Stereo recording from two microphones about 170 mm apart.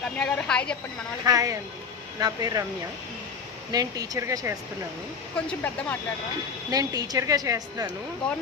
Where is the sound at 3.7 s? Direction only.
20° right (ahead or behind).